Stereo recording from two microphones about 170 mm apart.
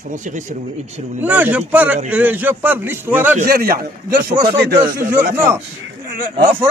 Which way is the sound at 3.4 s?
60° right (ahead or behind).